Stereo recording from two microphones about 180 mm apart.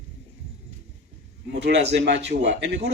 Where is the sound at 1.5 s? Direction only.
70° right (ahead or behind).